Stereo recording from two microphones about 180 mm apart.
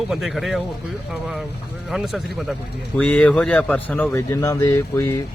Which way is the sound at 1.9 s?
Centre (ahead or behind).